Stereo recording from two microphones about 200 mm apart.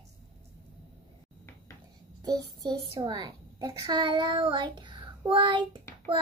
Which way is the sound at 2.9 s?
20° right (ahead or behind).